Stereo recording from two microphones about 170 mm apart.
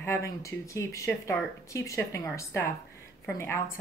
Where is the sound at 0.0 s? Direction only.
15° left (ahead or behind).